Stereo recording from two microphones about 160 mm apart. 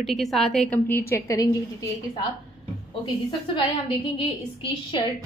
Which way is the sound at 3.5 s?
30° left (ahead or behind).